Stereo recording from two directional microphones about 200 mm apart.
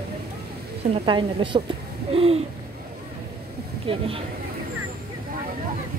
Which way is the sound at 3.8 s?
30° right (ahead or behind).